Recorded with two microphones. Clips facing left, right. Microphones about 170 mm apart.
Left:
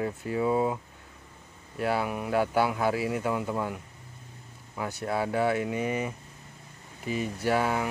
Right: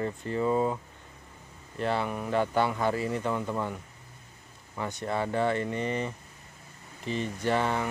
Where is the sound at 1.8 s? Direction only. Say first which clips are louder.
Left 1 dB; 5° left (ahead or behind).